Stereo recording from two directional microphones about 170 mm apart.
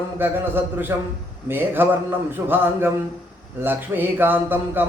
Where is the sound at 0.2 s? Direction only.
10° right (ahead or behind).